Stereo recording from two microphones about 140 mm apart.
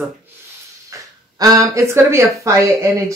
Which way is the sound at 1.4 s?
25° right (ahead or behind).